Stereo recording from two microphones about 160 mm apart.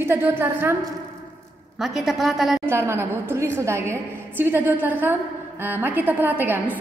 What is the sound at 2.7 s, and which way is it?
A woman's voice, 15° right (ahead or behind).